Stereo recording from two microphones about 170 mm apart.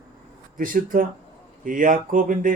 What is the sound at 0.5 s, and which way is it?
Speech, 55° right (ahead or behind).